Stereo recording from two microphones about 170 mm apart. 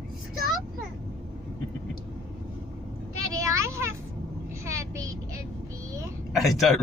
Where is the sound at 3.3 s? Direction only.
15° right (ahead or behind).